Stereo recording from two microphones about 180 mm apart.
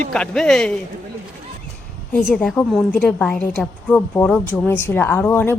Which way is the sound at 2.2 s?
Centre (ahead or behind).